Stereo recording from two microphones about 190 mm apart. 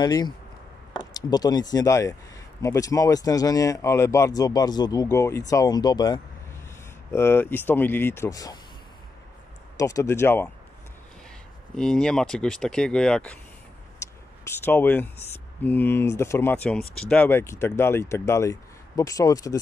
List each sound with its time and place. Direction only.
0.0 s speech: 20° left (ahead or behind)
9.8 s speech: 15° left (ahead or behind)
11.7 s speech: 5° left (ahead or behind)
14.6 s speech: 10° left (ahead or behind)